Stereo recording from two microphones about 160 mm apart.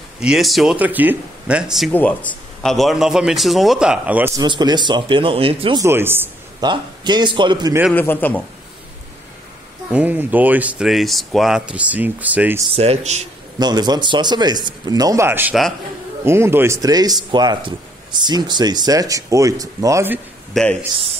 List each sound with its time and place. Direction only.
0.2 s a man's voice: centre (ahead or behind)
1.9 s a man's voice: 10° left (ahead or behind); by 4.3 s 10° right (ahead or behind)
4.4 s speech: 25° right (ahead or behind)
5.8 s speech: 15° right (ahead or behind)
6.6 s speech: 25° right (ahead or behind)
7.9 s a man's voice: 10° left (ahead or behind)
9.9 s speech: 10° right (ahead or behind)
12.7 s a man's voice: 40° right (ahead or behind)
13.6 s speech: 25° right (ahead or behind)
20.5 s a man's voice: 5° left (ahead or behind)